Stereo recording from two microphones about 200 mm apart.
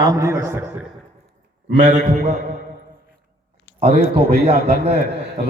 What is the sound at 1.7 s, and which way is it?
Speech, 35° right (ahead or behind).